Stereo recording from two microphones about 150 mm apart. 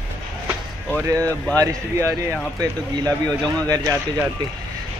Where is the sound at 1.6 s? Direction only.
20° right (ahead or behind).